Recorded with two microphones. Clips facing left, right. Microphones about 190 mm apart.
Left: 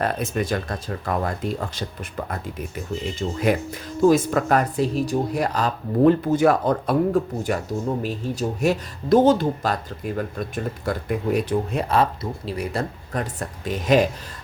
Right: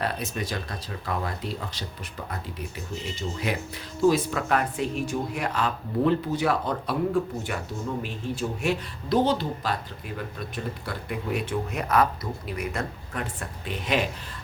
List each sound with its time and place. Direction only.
0.0 s speech: 50° left (ahead or behind)
3.2 s speech: 50° left (ahead or behind)